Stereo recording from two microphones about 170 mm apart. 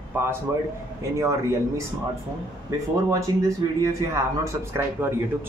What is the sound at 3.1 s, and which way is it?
Speech, 20° right (ahead or behind).